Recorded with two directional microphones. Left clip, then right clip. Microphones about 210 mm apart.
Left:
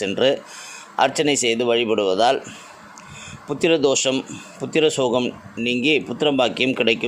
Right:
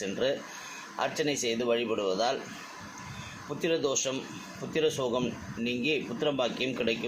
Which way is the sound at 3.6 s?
45° left (ahead or behind).